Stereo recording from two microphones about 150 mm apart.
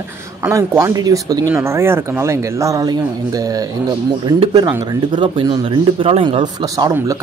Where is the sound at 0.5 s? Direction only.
20° right (ahead or behind).